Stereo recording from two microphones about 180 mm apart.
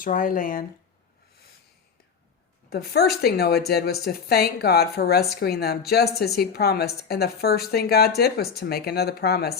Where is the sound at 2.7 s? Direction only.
60° left (ahead or behind).